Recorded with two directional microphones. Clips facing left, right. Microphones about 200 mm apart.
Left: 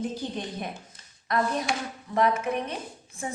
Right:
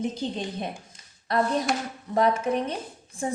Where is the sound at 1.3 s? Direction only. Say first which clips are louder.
Right 3 dB; 30° right (ahead or behind).